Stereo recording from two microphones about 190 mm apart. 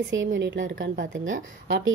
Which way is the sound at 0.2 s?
80° right.